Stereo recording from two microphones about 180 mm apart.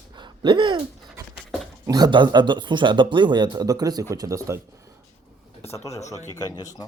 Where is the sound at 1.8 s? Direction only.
20° right (ahead or behind).